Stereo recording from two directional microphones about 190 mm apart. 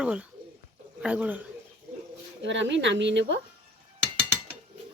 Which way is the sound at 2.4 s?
70° right (ahead or behind).